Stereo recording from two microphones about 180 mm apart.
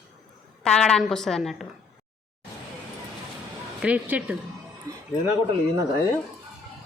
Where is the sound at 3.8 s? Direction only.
5° right (ahead or behind).